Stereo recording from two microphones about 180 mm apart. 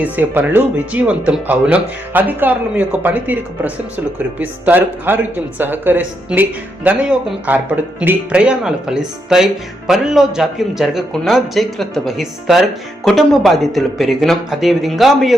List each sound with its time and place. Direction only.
0.0 s speech: 10° right (ahead or behind)